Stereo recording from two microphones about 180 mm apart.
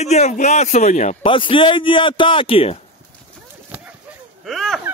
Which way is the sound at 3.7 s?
10° right (ahead or behind).